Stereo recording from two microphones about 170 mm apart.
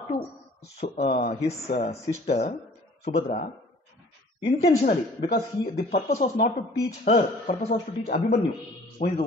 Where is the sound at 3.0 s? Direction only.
45° left (ahead or behind).